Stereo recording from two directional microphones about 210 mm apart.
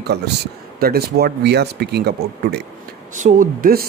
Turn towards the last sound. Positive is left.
turn(degrees=-40)  # may be behind; listen again after turning